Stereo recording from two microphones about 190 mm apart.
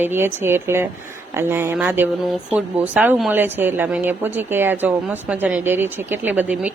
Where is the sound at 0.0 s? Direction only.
10° right (ahead or behind).